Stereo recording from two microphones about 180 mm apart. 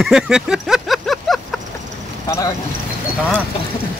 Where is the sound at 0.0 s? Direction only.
5° right (ahead or behind).